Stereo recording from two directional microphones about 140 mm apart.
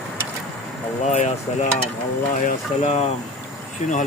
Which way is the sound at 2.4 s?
50° left (ahead or behind).